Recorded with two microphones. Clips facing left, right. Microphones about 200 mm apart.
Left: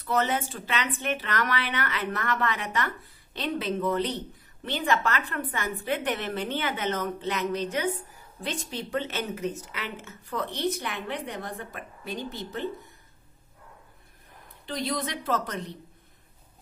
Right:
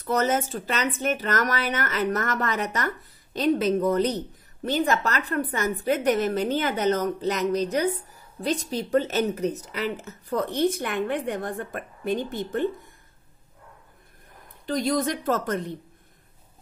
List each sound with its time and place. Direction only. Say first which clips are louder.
0.0 s a woman's voice: right 3 dB; 40° right (ahead or behind)
14.7 s speech: right 6 dB; 45° right (ahead or behind)